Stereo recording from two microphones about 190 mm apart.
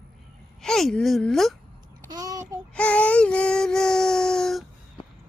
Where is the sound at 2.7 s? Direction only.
5° left (ahead or behind).